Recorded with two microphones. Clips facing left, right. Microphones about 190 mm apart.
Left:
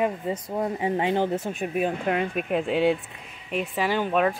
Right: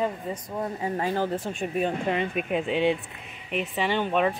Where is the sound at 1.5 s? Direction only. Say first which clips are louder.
Left 1 dB; 5° left (ahead or behind).